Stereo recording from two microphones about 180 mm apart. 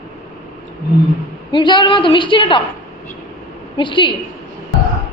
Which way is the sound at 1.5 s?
25° left (ahead or behind).